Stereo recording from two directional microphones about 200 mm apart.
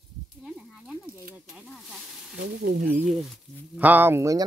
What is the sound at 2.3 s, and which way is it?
Speech, 65° right (ahead or behind).